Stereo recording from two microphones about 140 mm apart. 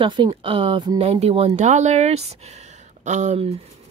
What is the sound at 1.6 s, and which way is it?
Speech, 55° right (ahead or behind).